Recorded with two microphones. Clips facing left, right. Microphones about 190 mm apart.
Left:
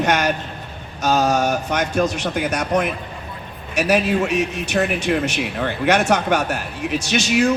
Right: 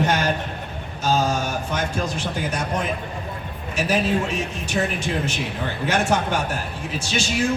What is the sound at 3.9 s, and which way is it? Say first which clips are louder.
Speech: left 4 dB; 70° left (ahead or behind).